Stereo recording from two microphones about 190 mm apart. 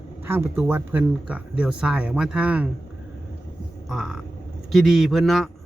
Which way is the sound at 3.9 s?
Centre (ahead or behind).